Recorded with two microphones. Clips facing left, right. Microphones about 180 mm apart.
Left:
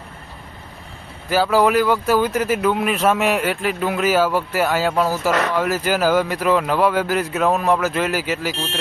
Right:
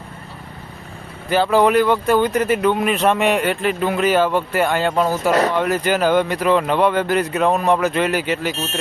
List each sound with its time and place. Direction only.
1.3 s speech: 5° left (ahead or behind)
5.3 s speech: 35° right (ahead or behind)
5.5 s speech: 5° left (ahead or behind)